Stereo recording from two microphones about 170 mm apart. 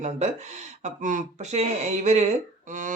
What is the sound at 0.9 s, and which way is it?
Speech, 45° right (ahead or behind).